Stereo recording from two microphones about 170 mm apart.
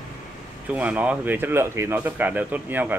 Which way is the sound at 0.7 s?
10° right (ahead or behind).